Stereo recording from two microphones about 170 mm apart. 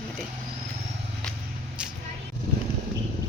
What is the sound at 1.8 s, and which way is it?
Vehicle, 5° right (ahead or behind).